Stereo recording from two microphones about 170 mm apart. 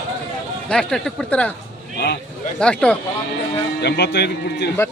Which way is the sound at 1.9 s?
70° left (ahead or behind).